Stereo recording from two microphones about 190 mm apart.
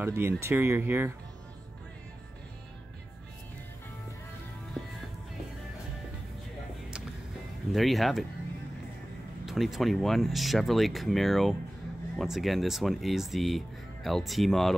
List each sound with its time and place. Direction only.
0.0 s speech: 15° right (ahead or behind)
7.7 s speech: centre (ahead or behind)
9.5 s speech: centre (ahead or behind)